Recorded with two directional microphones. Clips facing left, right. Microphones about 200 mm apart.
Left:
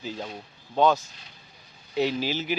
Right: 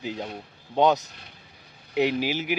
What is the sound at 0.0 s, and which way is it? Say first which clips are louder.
Speech: right 2 dB; 15° right (ahead or behind).